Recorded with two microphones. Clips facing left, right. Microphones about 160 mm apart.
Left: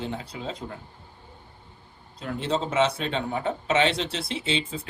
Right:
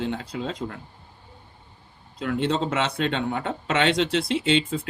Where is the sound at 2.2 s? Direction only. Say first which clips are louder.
Right 3 dB; 85° right.